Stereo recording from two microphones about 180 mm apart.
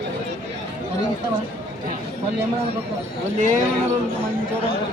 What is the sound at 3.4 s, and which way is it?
Speech, 45° right (ahead or behind).